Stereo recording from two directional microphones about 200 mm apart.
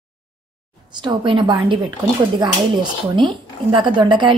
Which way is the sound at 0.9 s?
20° right (ahead or behind).